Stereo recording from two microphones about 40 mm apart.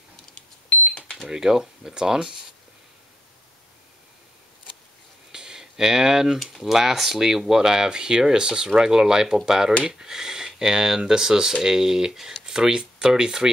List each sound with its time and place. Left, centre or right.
0.7 s smoke detector: left
1.3 s speech: centre
5.3 s a sound: centre
6.4 s speech: centre